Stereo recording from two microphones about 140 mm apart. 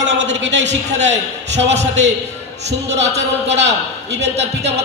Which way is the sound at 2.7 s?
50° right (ahead or behind).